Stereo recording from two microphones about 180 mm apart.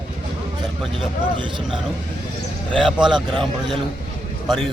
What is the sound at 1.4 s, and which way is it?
Speech, 25° right (ahead or behind).